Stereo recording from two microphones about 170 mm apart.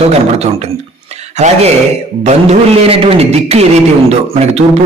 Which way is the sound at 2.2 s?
40° right (ahead or behind).